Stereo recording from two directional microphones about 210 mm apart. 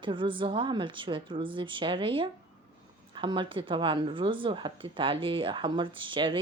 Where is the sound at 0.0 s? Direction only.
25° right (ahead or behind).